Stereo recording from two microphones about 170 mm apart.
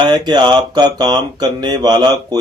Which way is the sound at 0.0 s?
25° right (ahead or behind).